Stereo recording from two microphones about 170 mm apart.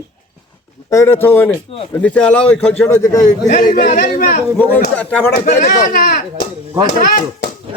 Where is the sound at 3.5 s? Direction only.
50° left (ahead or behind).